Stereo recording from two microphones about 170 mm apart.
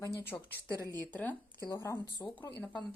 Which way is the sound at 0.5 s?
20° right (ahead or behind).